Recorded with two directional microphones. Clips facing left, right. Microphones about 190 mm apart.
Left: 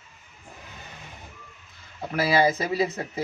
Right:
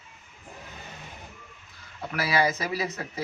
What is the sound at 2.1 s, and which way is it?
Speech, 25° left (ahead or behind).